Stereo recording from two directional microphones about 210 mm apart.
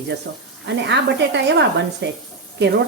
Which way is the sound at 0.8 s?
55° right (ahead or behind).